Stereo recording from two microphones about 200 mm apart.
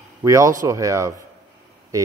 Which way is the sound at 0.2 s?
15° right (ahead or behind).